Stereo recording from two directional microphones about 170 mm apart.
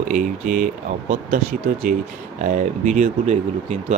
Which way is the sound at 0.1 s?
50° right (ahead or behind).